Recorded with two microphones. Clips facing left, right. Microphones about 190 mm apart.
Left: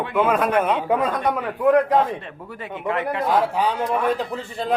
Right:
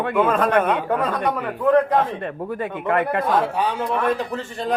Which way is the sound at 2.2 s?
50° right (ahead or behind).